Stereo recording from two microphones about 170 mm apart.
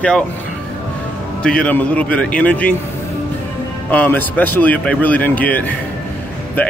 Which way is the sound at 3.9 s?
10° left (ahead or behind).